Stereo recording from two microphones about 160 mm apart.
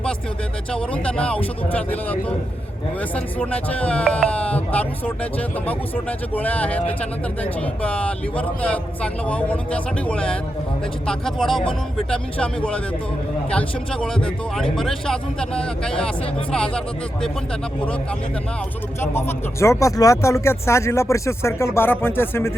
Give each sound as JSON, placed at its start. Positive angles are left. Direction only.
{"t": 0.7, "sound": "speech", "side_deg": 5}
{"t": 3.2, "sound": "speech", "side_deg": 10}
{"t": 18.9, "sound": "speech", "side_deg": 15}